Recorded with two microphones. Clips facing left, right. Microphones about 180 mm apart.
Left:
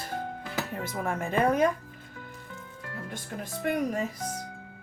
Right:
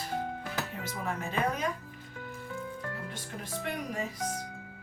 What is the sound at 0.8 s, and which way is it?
Speech, 50° left (ahead or behind).